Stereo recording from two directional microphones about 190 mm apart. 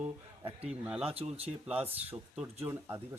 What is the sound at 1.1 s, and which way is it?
Speech, 30° right (ahead or behind).